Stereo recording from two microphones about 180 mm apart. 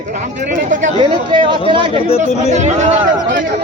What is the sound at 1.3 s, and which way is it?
Speech, 30° right (ahead or behind).